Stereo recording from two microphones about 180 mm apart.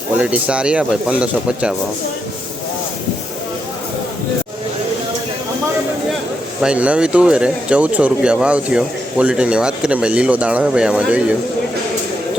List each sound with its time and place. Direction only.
0.2 s speech: 5° right (ahead or behind)
6.6 s speech: 5° right (ahead or behind)